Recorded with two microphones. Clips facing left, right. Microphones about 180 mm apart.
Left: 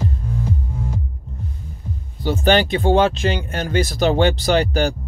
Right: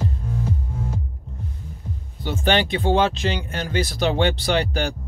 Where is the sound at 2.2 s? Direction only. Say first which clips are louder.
Left 4 dB; 40° left (ahead or behind).